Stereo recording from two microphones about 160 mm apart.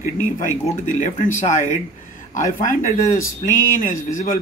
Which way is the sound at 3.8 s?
55° left (ahead or behind).